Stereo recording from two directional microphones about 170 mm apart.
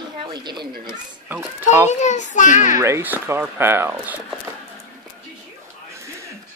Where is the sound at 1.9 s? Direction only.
45° left (ahead or behind).